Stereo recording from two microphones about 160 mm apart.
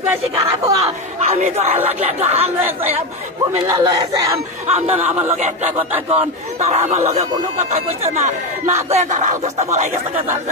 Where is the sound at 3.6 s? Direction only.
25° right (ahead or behind).